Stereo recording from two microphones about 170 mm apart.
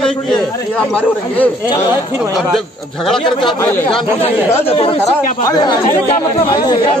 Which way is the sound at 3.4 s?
30° left (ahead or behind).